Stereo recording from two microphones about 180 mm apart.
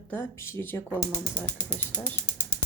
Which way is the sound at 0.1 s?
15° left (ahead or behind).